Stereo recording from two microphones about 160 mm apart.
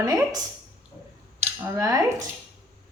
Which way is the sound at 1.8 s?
20° right (ahead or behind).